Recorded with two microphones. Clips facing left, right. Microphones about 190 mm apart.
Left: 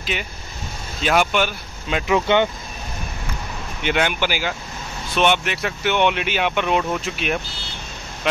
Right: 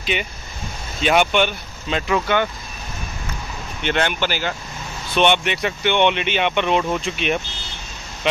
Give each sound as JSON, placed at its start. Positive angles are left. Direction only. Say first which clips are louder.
{"t": 0.0, "sound": "speech", "louder": "right 3 dB", "side_deg": 0}
{"t": 2.1, "sound": "speech", "louder": "left 3 dB", "side_deg": 20}
{"t": 3.8, "sound": "speech", "louder": "even", "side_deg": 10}